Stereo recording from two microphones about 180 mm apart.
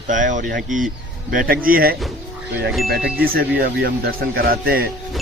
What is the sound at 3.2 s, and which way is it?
Speech, 55° right (ahead or behind).